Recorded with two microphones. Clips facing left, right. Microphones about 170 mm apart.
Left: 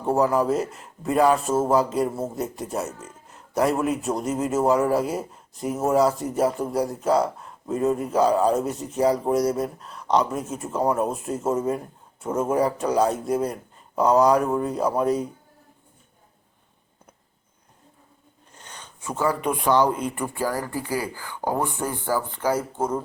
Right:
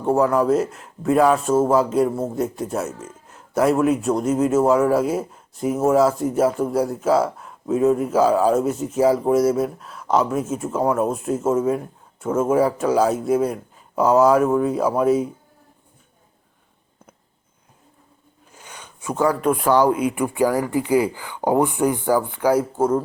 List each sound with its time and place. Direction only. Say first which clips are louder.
0.0 s a man's voice: right 3 dB; centre (ahead or behind)
18.5 s a sound: right 2 dB; 10° right (ahead or behind)
19.4 s speech: right 2 dB; centre (ahead or behind)